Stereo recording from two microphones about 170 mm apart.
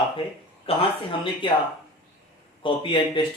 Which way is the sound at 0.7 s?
35° left (ahead or behind).